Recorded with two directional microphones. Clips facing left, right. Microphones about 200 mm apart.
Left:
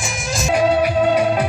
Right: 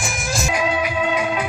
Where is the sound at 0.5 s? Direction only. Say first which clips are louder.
Left 8 dB; 35° left (ahead or behind).